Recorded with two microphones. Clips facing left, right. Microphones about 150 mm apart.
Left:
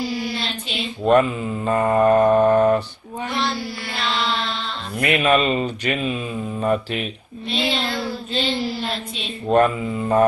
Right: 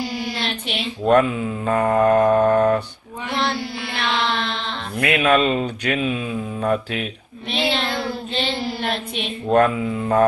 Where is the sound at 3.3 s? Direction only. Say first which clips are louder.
Right 3 dB; 60° right (ahead or behind).